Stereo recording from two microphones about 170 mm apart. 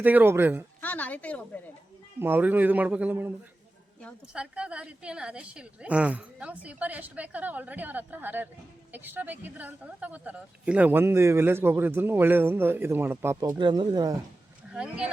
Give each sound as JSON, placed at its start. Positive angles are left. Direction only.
{"t": 0.0, "sound": "speech", "side_deg": -10}
{"t": 0.8, "sound": "speech", "side_deg": 10}
{"t": 2.1, "sound": "speech", "side_deg": -10}
{"t": 4.4, "sound": "speech", "side_deg": -5}
{"t": 13.6, "sound": "speech", "side_deg": -25}
{"t": 14.7, "sound": "speech", "side_deg": -5}